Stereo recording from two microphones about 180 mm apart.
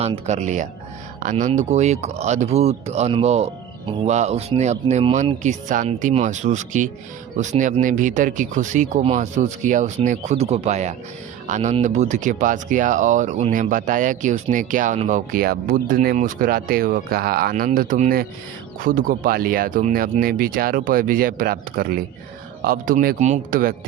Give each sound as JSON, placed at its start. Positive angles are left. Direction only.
{"t": 0.3, "sound": "speech", "side_deg": -40}